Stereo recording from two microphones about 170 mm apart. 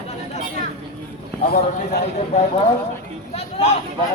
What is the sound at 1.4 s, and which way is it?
Speech, 65° left (ahead or behind).